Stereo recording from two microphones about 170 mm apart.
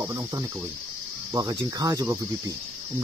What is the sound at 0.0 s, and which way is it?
Speech, 20° right (ahead or behind).